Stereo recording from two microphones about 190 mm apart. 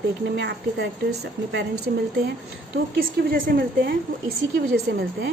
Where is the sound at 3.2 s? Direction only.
50° right (ahead or behind).